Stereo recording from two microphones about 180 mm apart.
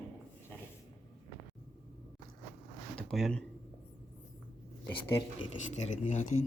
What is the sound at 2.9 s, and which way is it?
Speech, centre (ahead or behind).